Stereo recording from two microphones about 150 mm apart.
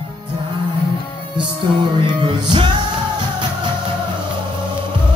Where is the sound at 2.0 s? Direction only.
30° right (ahead or behind).